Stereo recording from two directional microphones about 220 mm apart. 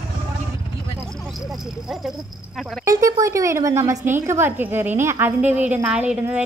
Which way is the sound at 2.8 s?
15° right (ahead or behind).